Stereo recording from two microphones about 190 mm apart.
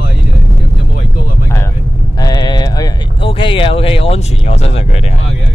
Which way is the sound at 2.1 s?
20° left (ahead or behind).